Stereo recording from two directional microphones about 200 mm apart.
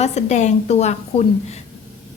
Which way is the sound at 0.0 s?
35° left (ahead or behind).